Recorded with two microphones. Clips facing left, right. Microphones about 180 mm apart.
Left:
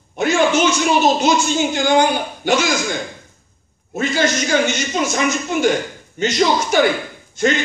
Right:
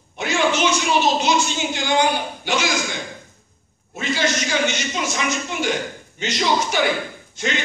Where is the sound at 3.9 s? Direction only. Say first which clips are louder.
Left 4 dB; 50° left (ahead or behind).